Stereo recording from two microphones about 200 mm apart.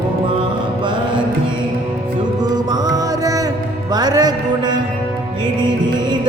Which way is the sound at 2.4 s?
20° right (ahead or behind).